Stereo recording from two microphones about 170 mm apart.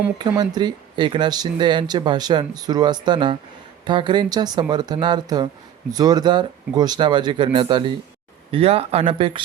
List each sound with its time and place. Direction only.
0.2 s speech: 25° right (ahead or behind)